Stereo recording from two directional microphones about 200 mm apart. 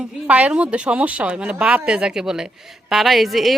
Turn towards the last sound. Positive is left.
turn(degrees=0)  # may be behind; listen again after turning